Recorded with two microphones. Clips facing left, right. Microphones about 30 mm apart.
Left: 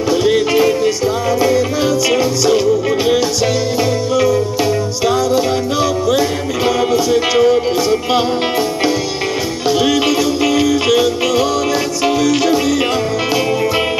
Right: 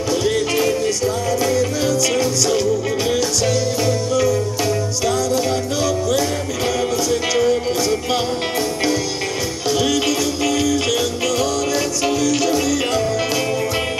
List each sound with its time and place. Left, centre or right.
0.1 s music: centre
9.7 s music: centre